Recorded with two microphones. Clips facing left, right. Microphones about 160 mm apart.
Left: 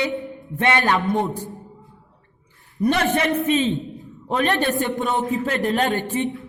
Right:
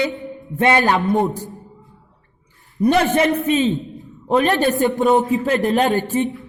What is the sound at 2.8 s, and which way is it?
A woman's voice, 40° right (ahead or behind).